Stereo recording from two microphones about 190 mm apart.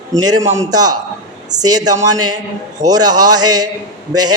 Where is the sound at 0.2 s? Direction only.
20° right (ahead or behind).